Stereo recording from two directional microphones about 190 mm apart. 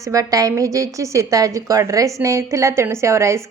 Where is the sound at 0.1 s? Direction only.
20° right (ahead or behind).